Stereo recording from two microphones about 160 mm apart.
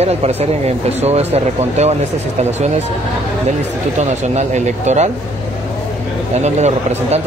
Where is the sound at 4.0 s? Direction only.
45° right (ahead or behind).